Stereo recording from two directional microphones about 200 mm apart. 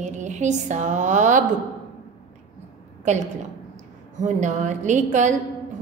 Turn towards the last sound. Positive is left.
turn(degrees=-35)  # may be behind; listen again after turning